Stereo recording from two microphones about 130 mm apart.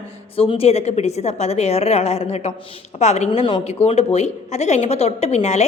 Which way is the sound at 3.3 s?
40° left (ahead or behind).